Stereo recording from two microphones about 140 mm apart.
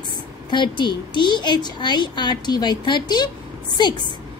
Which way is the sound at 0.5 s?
35° left (ahead or behind).